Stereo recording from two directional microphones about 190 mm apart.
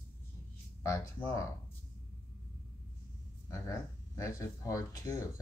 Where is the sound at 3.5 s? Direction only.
15° left (ahead or behind).